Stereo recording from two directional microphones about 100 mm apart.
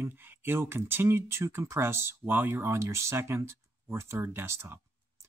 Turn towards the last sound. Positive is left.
turn(degrees=-25)  # may be behind; listen again after turning